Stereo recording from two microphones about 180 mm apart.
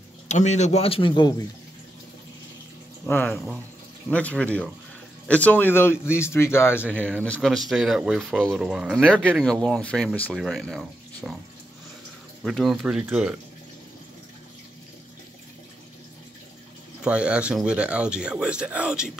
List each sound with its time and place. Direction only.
0.3 s speech: 40° left (ahead or behind)
3.1 s speech: 10° left (ahead or behind)
12.4 s speech: centre (ahead or behind)
17.0 s speech: 5° right (ahead or behind)